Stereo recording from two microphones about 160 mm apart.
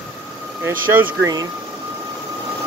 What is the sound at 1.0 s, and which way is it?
Speech, 15° right (ahead or behind).